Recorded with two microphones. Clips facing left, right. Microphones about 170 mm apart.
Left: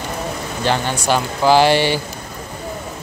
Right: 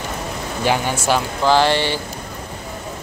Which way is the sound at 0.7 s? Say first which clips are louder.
Even; 10° right (ahead or behind).